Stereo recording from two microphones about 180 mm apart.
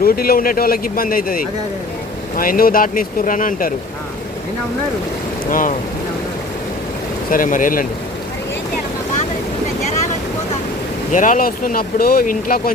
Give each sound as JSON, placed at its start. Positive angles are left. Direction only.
{"t": 0.0, "sound": "speech", "side_deg": 55}
{"t": 5.5, "sound": "speech", "side_deg": 50}
{"t": 7.3, "sound": "speech", "side_deg": 50}
{"t": 11.1, "sound": "speech", "side_deg": 45}